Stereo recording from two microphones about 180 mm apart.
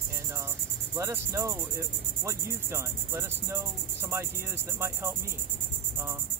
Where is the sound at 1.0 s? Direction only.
15° right (ahead or behind).